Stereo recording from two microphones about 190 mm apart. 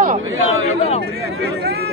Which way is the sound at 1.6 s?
55° right (ahead or behind).